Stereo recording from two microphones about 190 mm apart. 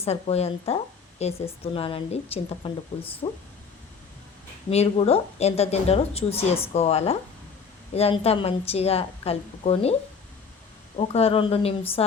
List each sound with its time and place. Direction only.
0.0 s a woman's voice: 35° left (ahead or behind)
4.7 s a woman's voice: 30° left (ahead or behind)
10.9 s a woman's voice: 35° left (ahead or behind)